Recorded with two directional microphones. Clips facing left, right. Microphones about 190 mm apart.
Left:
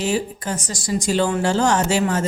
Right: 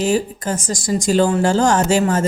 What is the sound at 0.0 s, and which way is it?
A woman's voice, 45° right (ahead or behind).